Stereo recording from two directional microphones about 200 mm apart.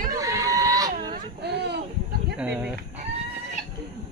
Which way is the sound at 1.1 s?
55° right (ahead or behind).